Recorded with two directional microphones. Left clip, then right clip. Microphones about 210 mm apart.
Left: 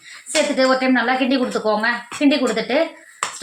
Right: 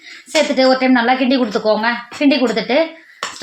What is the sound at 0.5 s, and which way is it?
A woman's voice, 45° right (ahead or behind).